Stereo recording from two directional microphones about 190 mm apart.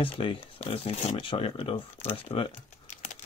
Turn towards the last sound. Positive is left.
turn(degrees=35)  # may be behind; listen again after turning